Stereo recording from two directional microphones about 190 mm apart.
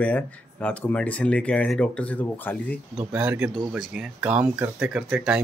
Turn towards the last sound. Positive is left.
turn(degrees=-5)  # may be behind; listen again after turning